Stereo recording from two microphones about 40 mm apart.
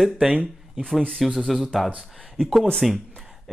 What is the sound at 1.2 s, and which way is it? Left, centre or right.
Speech, centre.